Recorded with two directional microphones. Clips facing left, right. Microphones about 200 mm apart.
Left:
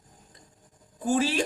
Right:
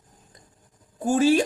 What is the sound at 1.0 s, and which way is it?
Speech, 45° right (ahead or behind).